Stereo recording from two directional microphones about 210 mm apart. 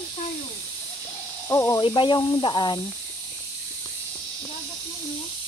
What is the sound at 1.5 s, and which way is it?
Speech, 15° left (ahead or behind).